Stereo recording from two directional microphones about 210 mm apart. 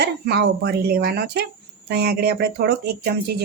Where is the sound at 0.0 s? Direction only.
50° right (ahead or behind).